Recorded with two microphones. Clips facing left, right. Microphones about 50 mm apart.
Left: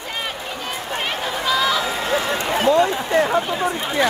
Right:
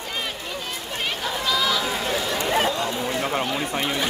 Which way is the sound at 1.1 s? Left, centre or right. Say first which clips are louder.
Left 3 dB; left.